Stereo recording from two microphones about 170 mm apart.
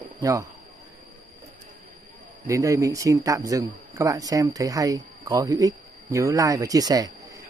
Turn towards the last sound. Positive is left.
turn(degrees=-20)  # may be behind; listen again after turning